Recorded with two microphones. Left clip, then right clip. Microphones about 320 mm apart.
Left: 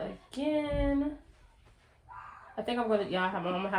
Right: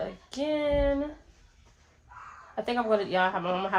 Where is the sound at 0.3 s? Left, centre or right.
Centre.